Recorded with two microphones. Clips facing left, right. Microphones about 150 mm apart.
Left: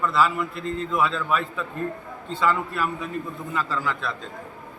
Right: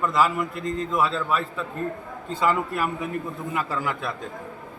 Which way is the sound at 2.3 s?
45° right (ahead or behind).